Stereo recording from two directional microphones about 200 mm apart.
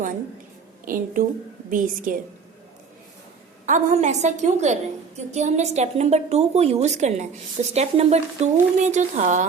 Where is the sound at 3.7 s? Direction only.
35° right (ahead or behind).